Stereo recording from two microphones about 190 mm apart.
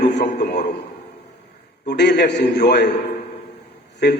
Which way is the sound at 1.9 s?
60° left (ahead or behind).